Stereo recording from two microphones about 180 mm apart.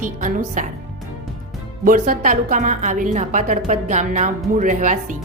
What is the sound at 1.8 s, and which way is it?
A woman's voice, 50° right (ahead or behind).